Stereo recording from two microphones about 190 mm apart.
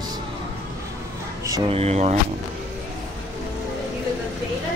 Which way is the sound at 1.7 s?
35° right (ahead or behind).